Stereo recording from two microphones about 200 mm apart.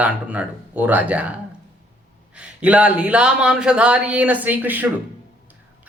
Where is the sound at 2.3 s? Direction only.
5° right (ahead or behind).